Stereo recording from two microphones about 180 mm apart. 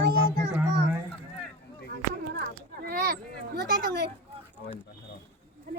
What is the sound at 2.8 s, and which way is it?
Speech, 60° right (ahead or behind).